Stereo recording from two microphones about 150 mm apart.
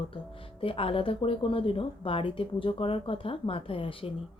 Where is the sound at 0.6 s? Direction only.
40° left (ahead or behind).